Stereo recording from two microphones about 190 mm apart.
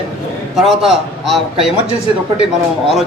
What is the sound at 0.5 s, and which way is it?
A man's voice, centre (ahead or behind).